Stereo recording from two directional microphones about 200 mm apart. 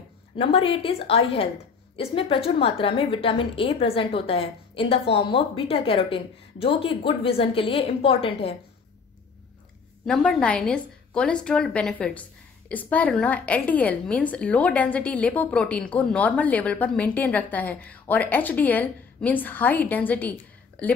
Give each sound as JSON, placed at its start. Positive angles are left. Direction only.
{"t": 0.4, "sound": "a woman's voice", "side_deg": 30}
{"t": 10.0, "sound": "a woman's voice", "side_deg": 0}